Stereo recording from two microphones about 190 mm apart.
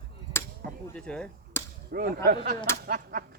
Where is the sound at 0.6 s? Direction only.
55° right (ahead or behind).